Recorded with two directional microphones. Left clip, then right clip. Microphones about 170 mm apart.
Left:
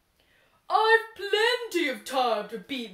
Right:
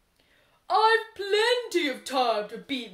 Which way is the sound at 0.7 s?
40° right (ahead or behind).